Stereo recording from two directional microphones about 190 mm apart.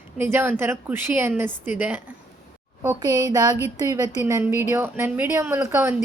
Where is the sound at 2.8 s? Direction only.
15° right (ahead or behind).